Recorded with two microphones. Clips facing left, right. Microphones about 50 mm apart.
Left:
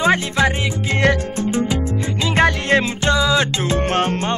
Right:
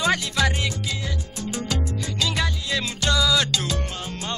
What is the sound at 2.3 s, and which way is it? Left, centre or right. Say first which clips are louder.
Music: left 11 dB; left.